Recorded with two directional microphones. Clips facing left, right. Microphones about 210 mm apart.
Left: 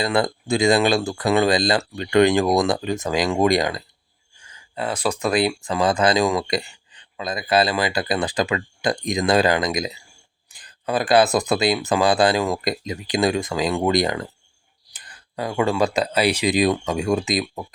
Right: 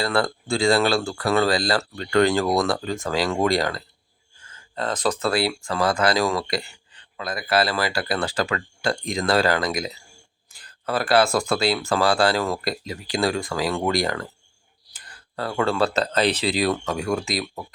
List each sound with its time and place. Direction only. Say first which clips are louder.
0.0 s speech: left 2 dB; 20° left (ahead or behind)